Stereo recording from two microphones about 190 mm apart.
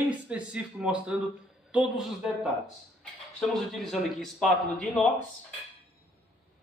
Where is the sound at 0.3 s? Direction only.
5° right (ahead or behind).